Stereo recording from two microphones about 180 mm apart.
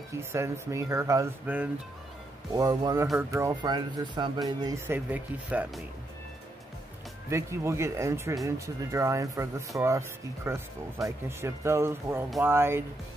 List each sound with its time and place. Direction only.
0.1 s speech: 15° right (ahead or behind)
2.5 s speech: 20° right (ahead or behind)
4.8 s speech: 10° right (ahead or behind)
7.2 s speech: 15° right (ahead or behind)